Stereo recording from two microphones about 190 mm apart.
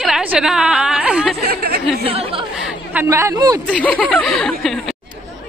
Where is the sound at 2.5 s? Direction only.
5° right (ahead or behind).